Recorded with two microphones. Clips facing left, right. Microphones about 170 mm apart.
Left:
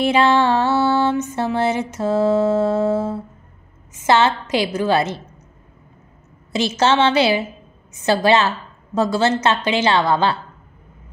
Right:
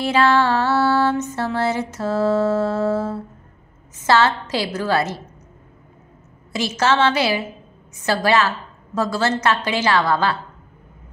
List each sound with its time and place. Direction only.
0.0 s music: 20° left (ahead or behind)
6.5 s music: 25° left (ahead or behind)